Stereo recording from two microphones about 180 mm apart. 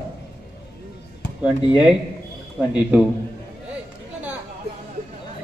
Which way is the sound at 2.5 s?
5° right (ahead or behind).